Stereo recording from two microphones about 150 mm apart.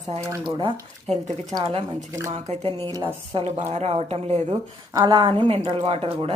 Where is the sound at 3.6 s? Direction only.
50° right (ahead or behind).